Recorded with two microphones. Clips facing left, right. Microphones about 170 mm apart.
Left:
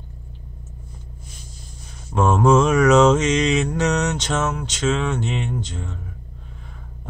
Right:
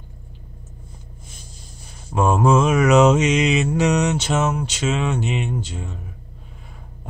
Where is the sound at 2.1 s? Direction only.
5° right (ahead or behind).